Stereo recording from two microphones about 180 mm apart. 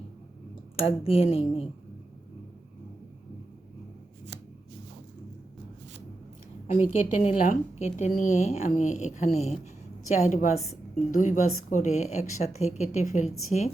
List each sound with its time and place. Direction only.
0.9 s a woman's voice: 30° left (ahead or behind)
6.7 s a woman's voice: 35° left (ahead or behind)